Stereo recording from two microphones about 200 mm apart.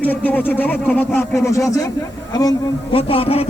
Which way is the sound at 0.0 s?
10° left (ahead or behind).